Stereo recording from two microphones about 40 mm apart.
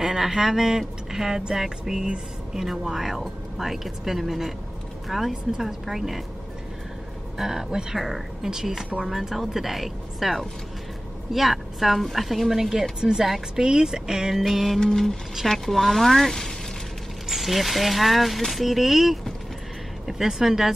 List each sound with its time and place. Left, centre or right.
0.0 s speech: centre
7.3 s speech: centre
14.3 s speech: centre
14.8 s speech: centre
17.3 s speech: centre